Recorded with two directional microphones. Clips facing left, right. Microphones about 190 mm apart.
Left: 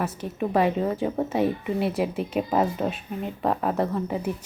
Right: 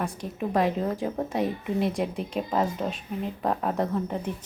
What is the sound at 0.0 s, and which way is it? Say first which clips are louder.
A woman's voice: left 3 dB; 5° left (ahead or behind).